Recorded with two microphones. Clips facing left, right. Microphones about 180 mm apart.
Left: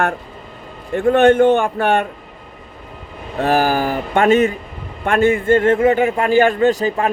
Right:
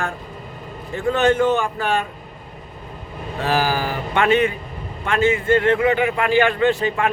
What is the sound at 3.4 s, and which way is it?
A man's voice, 50° left (ahead or behind).